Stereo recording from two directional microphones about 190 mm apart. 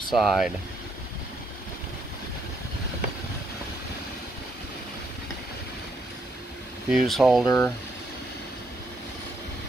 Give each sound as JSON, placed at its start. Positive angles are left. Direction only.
{"t": 0.1, "sound": "speech", "side_deg": 0}
{"t": 6.9, "sound": "speech", "side_deg": 0}
{"t": 7.4, "sound": "speech", "side_deg": 15}